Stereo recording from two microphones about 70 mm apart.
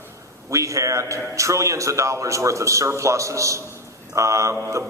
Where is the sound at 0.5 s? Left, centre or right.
Right.